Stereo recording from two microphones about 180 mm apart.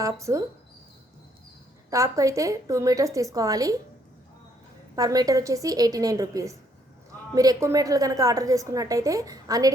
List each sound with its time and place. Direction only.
0.0 s a woman's voice: 15° right (ahead or behind)
1.9 s a woman's voice: 15° right (ahead or behind)
4.9 s a woman's voice: 20° right (ahead or behind)